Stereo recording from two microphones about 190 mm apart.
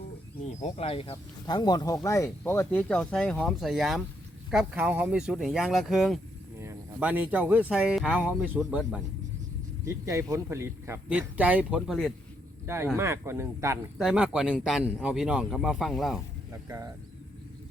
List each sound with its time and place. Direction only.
0.4 s a man's voice: 35° left (ahead or behind); by 6.1 s centre (ahead or behind)
6.6 s speech: 10° right (ahead or behind)
9.8 s speech: 15° right (ahead or behind); by 12.1 s centre (ahead or behind)
12.6 s speech: 15° right (ahead or behind)
14.0 s a man's voice: 5° right (ahead or behind)
16.5 s speech: 15° right (ahead or behind)